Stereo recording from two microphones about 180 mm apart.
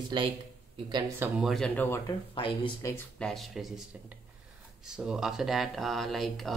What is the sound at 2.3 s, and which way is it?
Speech, 30° left (ahead or behind).